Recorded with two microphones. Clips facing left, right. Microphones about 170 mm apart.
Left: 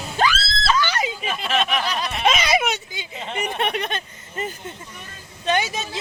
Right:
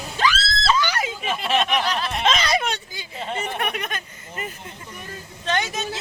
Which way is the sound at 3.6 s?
30° left (ahead or behind).